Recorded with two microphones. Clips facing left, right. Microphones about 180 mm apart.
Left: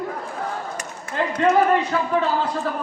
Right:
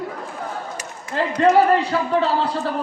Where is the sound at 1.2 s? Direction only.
30° right (ahead or behind).